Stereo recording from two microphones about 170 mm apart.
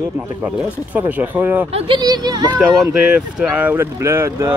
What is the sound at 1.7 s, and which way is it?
Speech, 35° right (ahead or behind).